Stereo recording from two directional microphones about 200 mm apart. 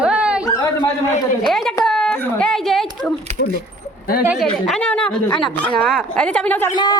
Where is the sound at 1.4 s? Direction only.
Centre (ahead or behind).